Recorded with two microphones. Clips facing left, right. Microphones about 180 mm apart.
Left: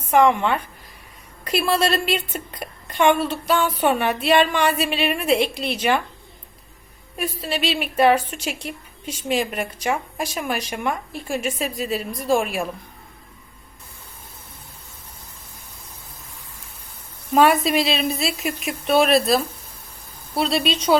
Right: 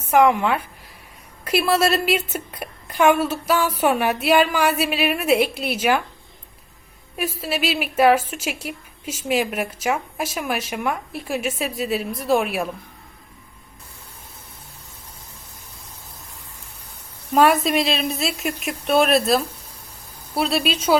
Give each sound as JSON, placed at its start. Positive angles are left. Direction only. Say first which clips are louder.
{"t": 0.1, "sound": "a woman's voice", "louder": "even", "side_deg": -5}
{"t": 7.2, "sound": "speech", "louder": "right 1 dB", "side_deg": -5}
{"t": 17.3, "sound": "speech", "louder": "even", "side_deg": 0}